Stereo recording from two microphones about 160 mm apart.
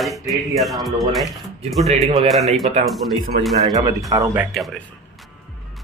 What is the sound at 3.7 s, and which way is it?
Speech, 20° right (ahead or behind).